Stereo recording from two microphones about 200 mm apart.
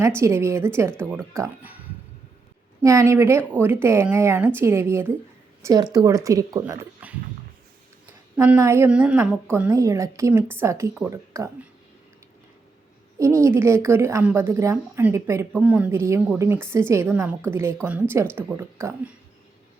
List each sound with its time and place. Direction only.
0.2 s a woman's voice: 15° right (ahead or behind)
8.4 s a woman's voice: 15° right (ahead or behind)
13.1 s a woman's voice: 15° right (ahead or behind)